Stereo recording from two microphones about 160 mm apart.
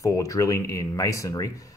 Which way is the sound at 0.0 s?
20° left (ahead or behind).